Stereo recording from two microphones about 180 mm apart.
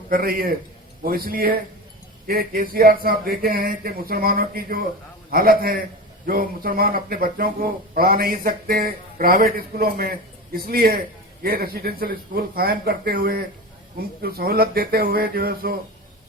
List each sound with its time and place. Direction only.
0.1 s speech: 55° right (ahead or behind)